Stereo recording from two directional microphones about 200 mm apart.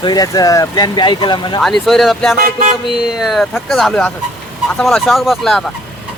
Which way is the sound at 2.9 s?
Centre (ahead or behind).